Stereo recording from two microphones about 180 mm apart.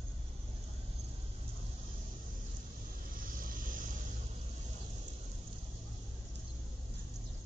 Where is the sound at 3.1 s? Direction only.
50° right (ahead or behind).